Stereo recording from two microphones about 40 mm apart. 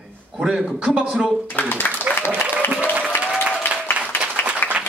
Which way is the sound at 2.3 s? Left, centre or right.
Right.